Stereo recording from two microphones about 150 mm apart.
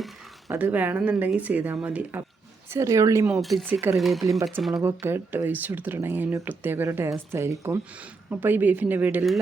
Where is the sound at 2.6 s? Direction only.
20° right (ahead or behind).